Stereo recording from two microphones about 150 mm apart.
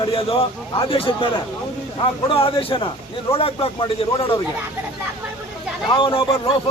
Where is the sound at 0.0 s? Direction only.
40° left (ahead or behind).